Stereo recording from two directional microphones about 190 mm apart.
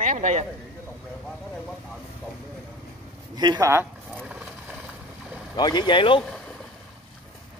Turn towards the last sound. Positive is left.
turn(degrees=25)  # may be behind; listen again after turning